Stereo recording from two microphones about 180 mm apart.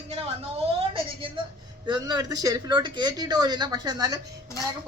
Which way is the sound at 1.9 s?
20° right (ahead or behind).